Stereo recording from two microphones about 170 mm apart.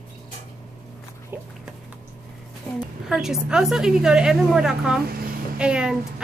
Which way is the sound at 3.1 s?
5° right (ahead or behind).